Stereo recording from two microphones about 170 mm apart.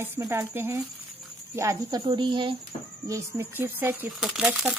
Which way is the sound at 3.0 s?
20° right (ahead or behind).